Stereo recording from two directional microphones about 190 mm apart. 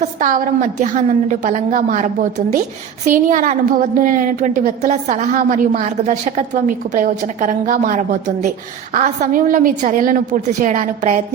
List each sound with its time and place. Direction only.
0.2 s a woman's voice: 45° right (ahead or behind)
3.1 s a woman's voice: 45° right (ahead or behind)